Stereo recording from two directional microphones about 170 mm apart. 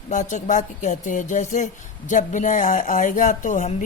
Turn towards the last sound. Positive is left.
turn(degrees=50)  # may be behind; listen again after turning